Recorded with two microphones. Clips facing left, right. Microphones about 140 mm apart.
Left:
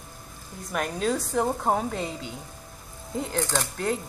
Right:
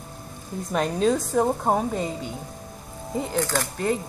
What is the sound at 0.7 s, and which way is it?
Speech, 25° right (ahead or behind).